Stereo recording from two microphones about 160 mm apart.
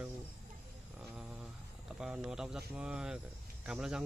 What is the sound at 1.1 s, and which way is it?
Speech, 5° right (ahead or behind).